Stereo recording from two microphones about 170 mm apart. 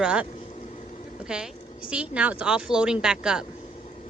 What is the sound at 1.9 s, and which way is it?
Speech, 5° right (ahead or behind).